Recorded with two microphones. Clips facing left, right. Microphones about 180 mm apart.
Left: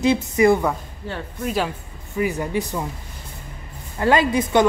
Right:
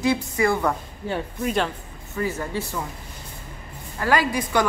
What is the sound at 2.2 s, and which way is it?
Speech, 15° left (ahead or behind).